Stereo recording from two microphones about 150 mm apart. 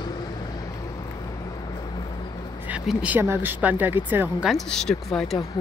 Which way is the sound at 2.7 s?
10° right (ahead or behind).